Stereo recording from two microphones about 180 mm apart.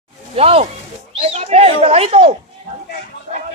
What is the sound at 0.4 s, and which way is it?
Speech, 35° right (ahead or behind).